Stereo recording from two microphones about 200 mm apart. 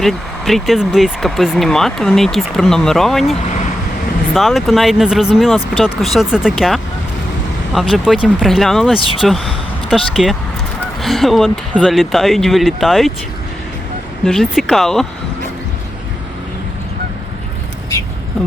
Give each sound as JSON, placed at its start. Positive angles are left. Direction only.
{"t": 0.0, "sound": "speech", "side_deg": 0}
{"t": 4.4, "sound": "speech", "side_deg": 0}
{"t": 9.0, "sound": "speech", "side_deg": 25}
{"t": 9.2, "sound": "speech", "side_deg": 0}
{"t": 14.3, "sound": "speech", "side_deg": 0}